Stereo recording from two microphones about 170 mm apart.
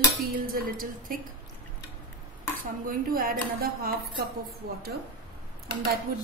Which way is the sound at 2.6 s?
55° right (ahead or behind).